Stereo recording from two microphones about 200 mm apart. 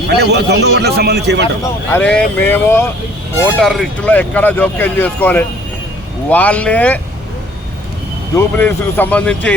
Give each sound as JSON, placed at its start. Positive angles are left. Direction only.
{"t": 0.1, "sound": "a man's voice", "side_deg": -55}
{"t": 1.6, "sound": "speech", "side_deg": 10}
{"t": 8.4, "sound": "speech", "side_deg": 10}